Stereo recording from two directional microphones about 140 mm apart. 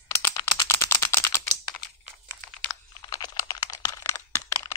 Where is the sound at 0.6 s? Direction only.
15° left (ahead or behind).